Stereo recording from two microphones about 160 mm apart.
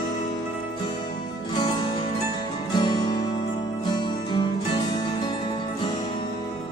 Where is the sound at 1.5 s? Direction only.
25° left (ahead or behind).